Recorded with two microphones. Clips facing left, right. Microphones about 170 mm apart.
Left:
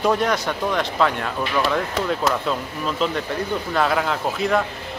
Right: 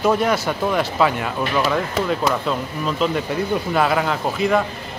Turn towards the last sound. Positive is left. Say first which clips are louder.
# right 2 dB
turn(degrees=0)  # may be behind; listen again after turning